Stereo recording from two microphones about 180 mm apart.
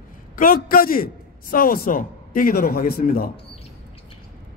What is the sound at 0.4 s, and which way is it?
Speech, 50° left (ahead or behind).